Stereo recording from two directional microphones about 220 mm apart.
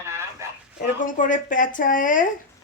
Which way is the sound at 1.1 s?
35° left (ahead or behind).